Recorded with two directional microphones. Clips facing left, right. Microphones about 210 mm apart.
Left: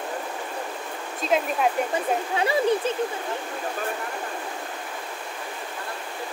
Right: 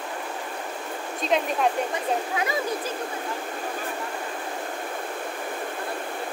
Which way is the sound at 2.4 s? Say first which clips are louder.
Left 5 dB; 30° left (ahead or behind).